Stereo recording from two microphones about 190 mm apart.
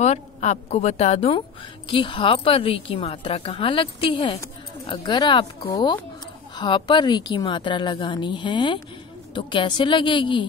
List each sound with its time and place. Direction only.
0.0 s a woman's voice: 35° left (ahead or behind)